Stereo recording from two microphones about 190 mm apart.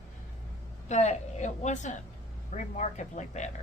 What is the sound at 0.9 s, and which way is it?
A woman's voice, 40° left (ahead or behind).